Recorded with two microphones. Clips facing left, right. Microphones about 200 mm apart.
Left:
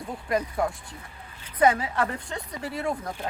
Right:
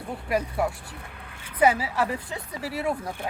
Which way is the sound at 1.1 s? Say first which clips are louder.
Right 3 dB; 65° right (ahead or behind).